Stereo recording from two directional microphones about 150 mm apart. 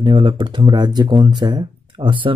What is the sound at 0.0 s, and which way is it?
Speech, 35° right (ahead or behind).